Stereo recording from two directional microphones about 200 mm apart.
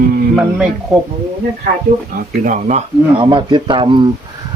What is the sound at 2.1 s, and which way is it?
Speech, 40° right (ahead or behind).